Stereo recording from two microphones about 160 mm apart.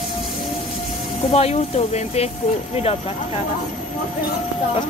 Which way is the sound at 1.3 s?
40° left (ahead or behind).